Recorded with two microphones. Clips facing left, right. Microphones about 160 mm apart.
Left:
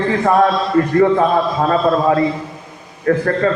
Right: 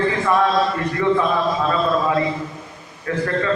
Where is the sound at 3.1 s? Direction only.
45° left (ahead or behind).